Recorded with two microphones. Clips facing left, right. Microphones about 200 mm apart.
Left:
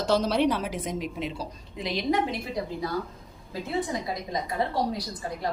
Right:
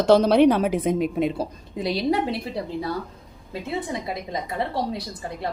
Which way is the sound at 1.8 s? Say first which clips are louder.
Right 4 dB; 35° right (ahead or behind).